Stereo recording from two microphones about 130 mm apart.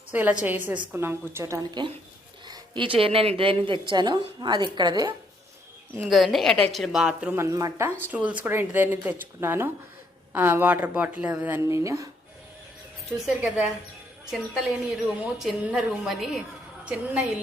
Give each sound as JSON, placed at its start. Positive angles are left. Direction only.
{"t": 0.1, "sound": "a woman's voice", "side_deg": -10}
{"t": 2.5, "sound": "speech", "side_deg": -40}
{"t": 6.0, "sound": "a woman's voice", "side_deg": 0}
{"t": 7.3, "sound": "speech", "side_deg": -25}
{"t": 13.2, "sound": "a woman's voice", "side_deg": -5}